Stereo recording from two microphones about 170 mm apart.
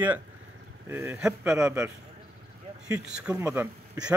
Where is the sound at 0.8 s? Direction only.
15° right (ahead or behind).